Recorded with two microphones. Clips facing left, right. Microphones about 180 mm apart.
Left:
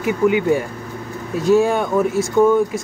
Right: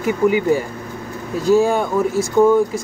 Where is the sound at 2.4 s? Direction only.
15° right (ahead or behind).